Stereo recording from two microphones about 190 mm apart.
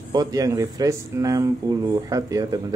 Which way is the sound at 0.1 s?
20° right (ahead or behind).